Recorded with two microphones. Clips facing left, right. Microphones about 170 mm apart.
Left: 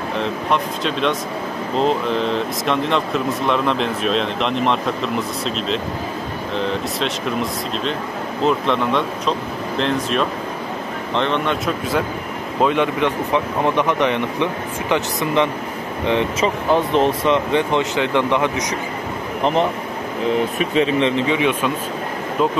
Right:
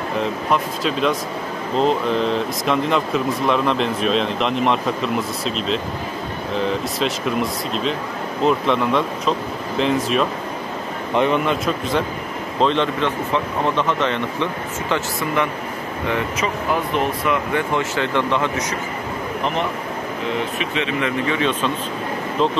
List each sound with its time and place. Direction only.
0.2 s speech: centre (ahead or behind)
12.5 s speech: 10° left (ahead or behind)
19.4 s speech: 35° left (ahead or behind)
20.7 s speech: 35° left (ahead or behind)
21.3 s speech: 15° left (ahead or behind)